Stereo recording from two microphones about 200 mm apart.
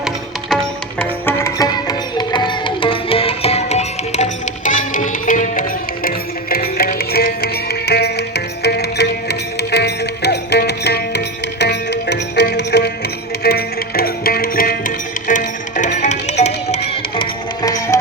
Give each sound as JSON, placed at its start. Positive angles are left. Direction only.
{"t": 0.5, "sound": "music", "side_deg": 5}
{"t": 17.2, "sound": "music", "side_deg": 20}